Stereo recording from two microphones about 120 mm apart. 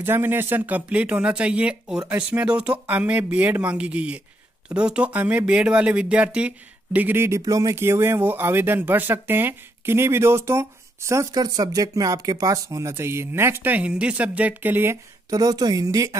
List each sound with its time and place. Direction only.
0.0 s speech: 20° right (ahead or behind)
15.2 s speech: 30° right (ahead or behind)